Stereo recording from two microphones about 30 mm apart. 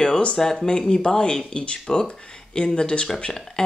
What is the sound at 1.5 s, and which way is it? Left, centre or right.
Speech, left.